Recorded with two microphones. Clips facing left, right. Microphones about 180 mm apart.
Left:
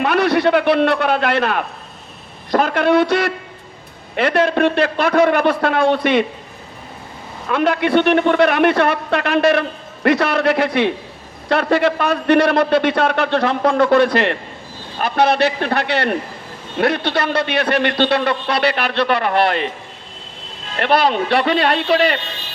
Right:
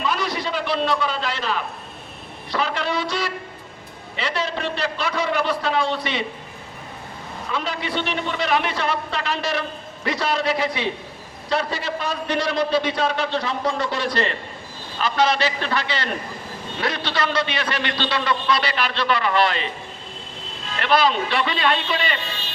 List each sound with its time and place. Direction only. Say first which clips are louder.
0.0 s a man's voice: left 10 dB; 65° left (ahead or behind)
7.4 s a man's voice: left 11 dB; 60° left (ahead or behind)
20.7 s a man's voice: left 4 dB; 60° left (ahead or behind)